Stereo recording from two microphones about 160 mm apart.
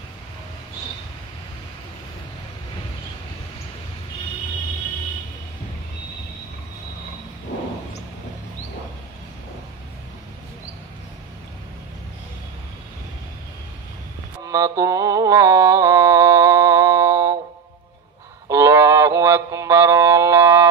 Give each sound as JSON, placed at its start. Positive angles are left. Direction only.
{"t": 14.4, "sound": "mantra", "side_deg": -20}
{"t": 18.5, "sound": "mantra", "side_deg": -15}